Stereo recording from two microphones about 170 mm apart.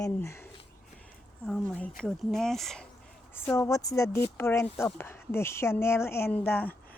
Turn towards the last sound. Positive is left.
turn(degrees=10)  # may be behind; listen again after turning